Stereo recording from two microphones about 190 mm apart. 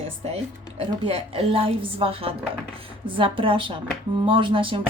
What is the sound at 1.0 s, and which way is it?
A woman's voice, 30° right (ahead or behind).